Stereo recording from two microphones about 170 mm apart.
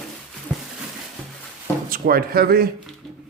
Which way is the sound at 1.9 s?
60° right (ahead or behind).